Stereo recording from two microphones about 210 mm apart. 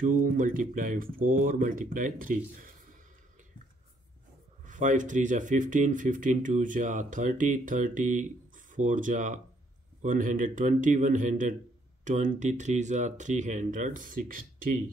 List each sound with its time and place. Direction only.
0.0 s speech: 40° right (ahead or behind)
4.6 s speech: 35° right (ahead or behind)